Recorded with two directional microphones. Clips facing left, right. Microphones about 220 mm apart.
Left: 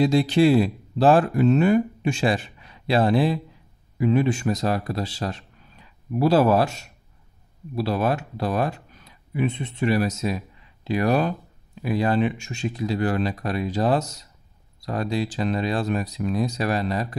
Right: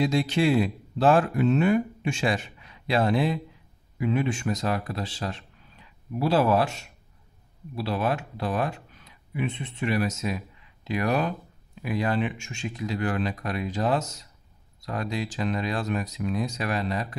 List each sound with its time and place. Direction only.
0.0 s speech: 35° left (ahead or behind)